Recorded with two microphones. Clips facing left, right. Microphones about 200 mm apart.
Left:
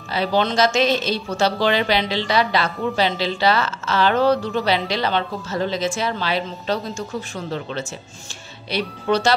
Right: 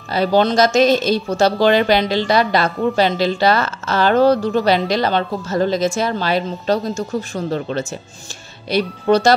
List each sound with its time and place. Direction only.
0.1 s speech: 45° right (ahead or behind)